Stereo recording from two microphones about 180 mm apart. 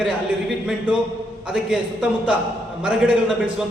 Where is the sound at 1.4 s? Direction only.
5° right (ahead or behind).